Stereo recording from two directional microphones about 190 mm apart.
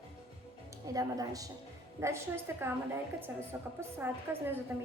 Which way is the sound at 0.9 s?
20° right (ahead or behind).